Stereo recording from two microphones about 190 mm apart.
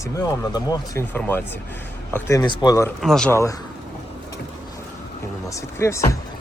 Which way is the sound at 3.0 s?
Centre (ahead or behind).